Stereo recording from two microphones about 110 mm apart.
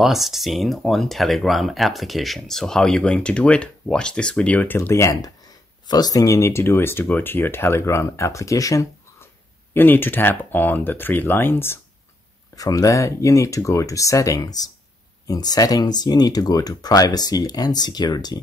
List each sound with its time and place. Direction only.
0.0 s speech: centre (ahead or behind); by 9.3 s 30° left (ahead or behind)
9.8 s speech: 20° left (ahead or behind)
12.5 s speech: 30° left (ahead or behind)